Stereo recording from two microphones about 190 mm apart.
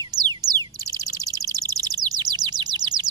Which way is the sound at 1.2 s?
20° right (ahead or behind).